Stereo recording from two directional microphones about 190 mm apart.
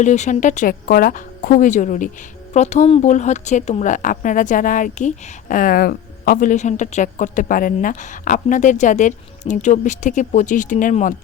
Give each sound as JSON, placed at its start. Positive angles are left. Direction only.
{"t": 0.0, "sound": "speech", "side_deg": 40}